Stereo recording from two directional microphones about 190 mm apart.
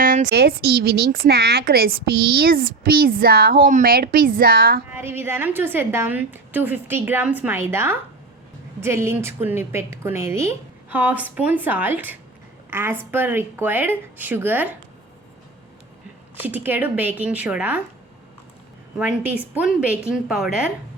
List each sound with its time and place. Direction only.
0.0 s a sound: 45° right (ahead or behind)
0.3 s speech: 55° right (ahead or behind)
4.9 s a woman's voice: 10° right (ahead or behind)
16.4 s a woman's voice: 10° right (ahead or behind)
18.9 s a woman's voice: 5° right (ahead or behind)